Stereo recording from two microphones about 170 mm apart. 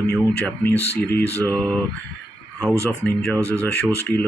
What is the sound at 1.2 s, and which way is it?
Speech, 10° left (ahead or behind).